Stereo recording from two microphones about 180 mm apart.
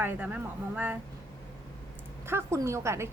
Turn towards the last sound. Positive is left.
turn(degrees=-15)  # may be behind; listen again after turning